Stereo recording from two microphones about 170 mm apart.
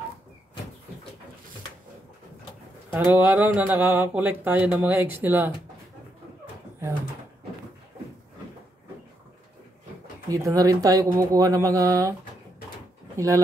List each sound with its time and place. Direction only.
2.9 s speech: 10° right (ahead or behind)
10.3 s speech: 20° right (ahead or behind)